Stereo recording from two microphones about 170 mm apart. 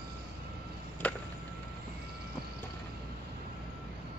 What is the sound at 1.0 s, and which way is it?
Vehicle, 10° left (ahead or behind).